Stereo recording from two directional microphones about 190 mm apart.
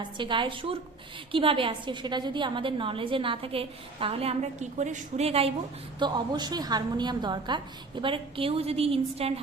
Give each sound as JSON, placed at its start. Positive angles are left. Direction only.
{"t": 0.2, "sound": "a woman's voice", "side_deg": -25}
{"t": 6.0, "sound": "a woman's voice", "side_deg": -25}